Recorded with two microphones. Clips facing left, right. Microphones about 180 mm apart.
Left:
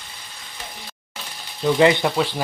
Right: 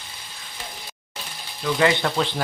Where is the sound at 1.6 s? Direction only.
20° left (ahead or behind).